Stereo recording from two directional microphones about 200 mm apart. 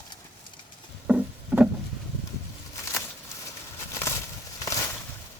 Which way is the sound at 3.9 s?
15° left (ahead or behind).